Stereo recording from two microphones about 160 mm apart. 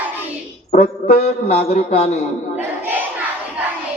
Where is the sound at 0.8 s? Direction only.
75° left (ahead or behind).